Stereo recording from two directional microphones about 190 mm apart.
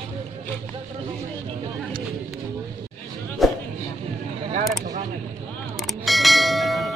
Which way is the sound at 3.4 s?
Centre (ahead or behind).